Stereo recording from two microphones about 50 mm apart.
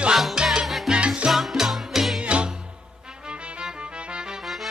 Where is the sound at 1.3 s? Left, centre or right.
Centre.